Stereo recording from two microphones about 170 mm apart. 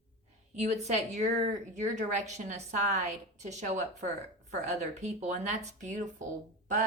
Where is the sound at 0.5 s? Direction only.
40° right (ahead or behind).